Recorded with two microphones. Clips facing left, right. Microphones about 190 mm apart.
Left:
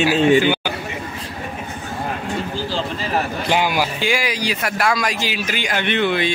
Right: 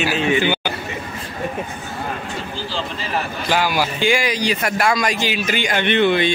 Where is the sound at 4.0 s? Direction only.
5° left (ahead or behind).